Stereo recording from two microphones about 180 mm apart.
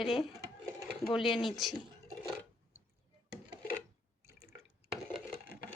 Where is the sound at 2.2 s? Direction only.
5° right (ahead or behind).